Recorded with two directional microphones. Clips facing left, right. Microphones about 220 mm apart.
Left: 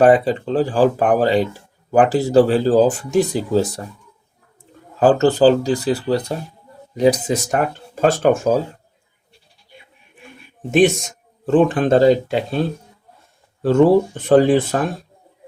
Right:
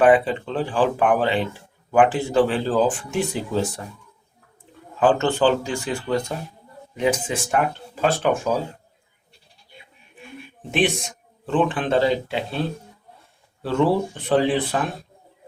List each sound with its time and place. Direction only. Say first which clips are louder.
0.0 s speech: left 3 dB; 40° left (ahead or behind)
4.9 s speech: left 5 dB; 40° left (ahead or behind)
10.7 s speech: left 8 dB; 45° left (ahead or behind)
13.6 s speech: left 7 dB; 45° left (ahead or behind)